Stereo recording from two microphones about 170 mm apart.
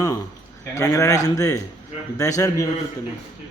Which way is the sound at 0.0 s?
20° left (ahead or behind).